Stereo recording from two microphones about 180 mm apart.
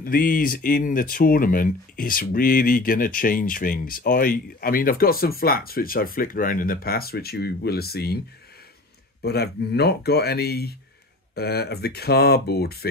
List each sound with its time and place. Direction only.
0.0 s speech: 50° left (ahead or behind)
9.2 s speech: 60° left (ahead or behind)